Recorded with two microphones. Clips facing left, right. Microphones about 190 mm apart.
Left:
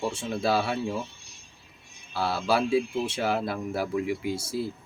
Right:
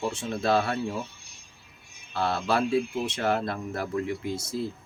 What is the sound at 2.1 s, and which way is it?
Speech, 5° left (ahead or behind).